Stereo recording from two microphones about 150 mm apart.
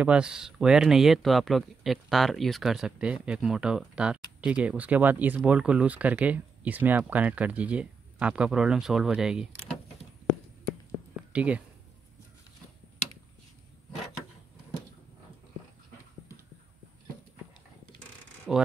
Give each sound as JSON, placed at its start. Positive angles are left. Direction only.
{"t": 0.0, "sound": "speech", "side_deg": -5}
{"t": 11.3, "sound": "speech", "side_deg": -10}
{"t": 18.5, "sound": "speech", "side_deg": 0}